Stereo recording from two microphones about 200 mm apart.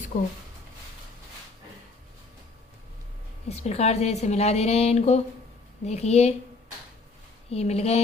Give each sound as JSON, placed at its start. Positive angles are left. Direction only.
{"t": 3.5, "sound": "a woman's voice", "side_deg": 30}
{"t": 7.5, "sound": "a woman's voice", "side_deg": 30}